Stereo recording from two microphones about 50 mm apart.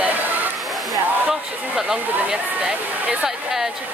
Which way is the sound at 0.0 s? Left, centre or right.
Right.